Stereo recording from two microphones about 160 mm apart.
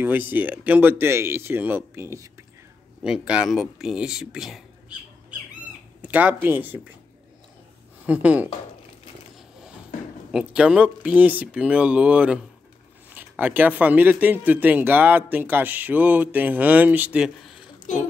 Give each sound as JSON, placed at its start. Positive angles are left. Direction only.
{"t": 0.0, "sound": "speech", "side_deg": -10}
{"t": 3.0, "sound": "speech", "side_deg": -5}
{"t": 6.0, "sound": "speech", "side_deg": -10}
{"t": 8.1, "sound": "speech", "side_deg": -10}
{"t": 10.3, "sound": "speech", "side_deg": -5}